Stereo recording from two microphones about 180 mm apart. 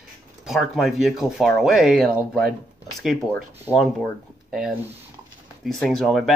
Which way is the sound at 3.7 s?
20° left (ahead or behind).